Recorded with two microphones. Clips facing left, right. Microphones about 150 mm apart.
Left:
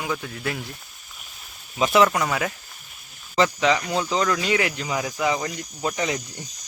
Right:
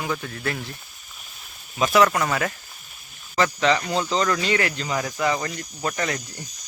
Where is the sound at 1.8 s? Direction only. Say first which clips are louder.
Even; 20° left (ahead or behind).